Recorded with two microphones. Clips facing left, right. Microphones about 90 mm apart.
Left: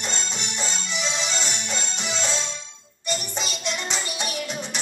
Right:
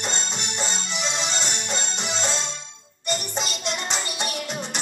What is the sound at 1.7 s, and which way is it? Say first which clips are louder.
Music: right 1 dB; 25° right (ahead or behind).